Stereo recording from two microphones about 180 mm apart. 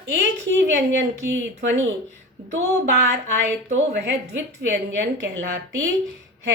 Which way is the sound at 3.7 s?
70° right (ahead or behind).